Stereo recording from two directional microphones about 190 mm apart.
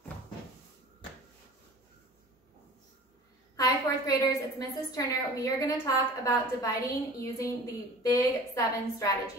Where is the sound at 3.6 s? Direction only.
20° left (ahead or behind).